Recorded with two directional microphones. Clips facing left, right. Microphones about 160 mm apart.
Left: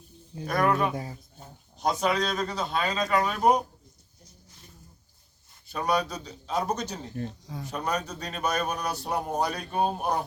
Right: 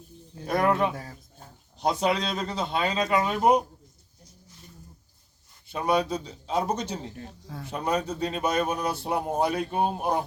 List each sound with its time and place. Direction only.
0.4 s a man's voice: 25° right (ahead or behind)
5.7 s a man's voice: 25° right (ahead or behind)